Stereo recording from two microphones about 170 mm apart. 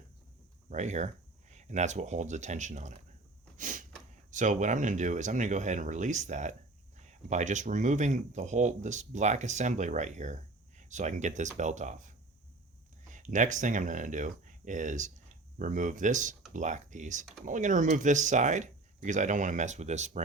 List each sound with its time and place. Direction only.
0.7 s speech: 45° right (ahead or behind)
3.6 s a sound: 50° right (ahead or behind)
4.3 s speech: 45° right (ahead or behind)
13.1 s speech: 45° right (ahead or behind)